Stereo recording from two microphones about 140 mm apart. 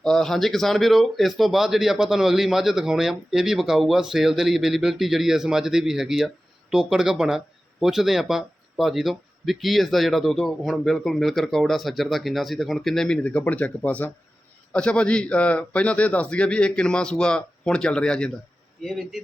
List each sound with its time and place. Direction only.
0.0 s a man's voice: 5° left (ahead or behind)